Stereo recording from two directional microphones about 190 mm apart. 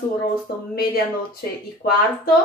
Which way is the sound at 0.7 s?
55° left (ahead or behind).